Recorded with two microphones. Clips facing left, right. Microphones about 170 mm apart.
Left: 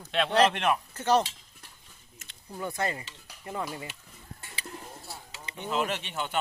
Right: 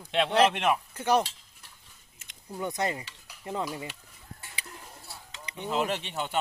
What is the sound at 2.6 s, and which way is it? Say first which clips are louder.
Dishes: right 1 dB; 20° right (ahead or behind).